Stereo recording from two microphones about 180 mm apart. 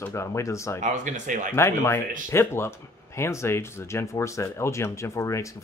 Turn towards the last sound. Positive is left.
turn(degrees=15)  # may be behind; listen again after turning